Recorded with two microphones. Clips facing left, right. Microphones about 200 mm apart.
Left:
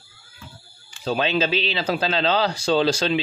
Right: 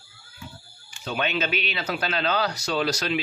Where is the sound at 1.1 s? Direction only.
30° left (ahead or behind).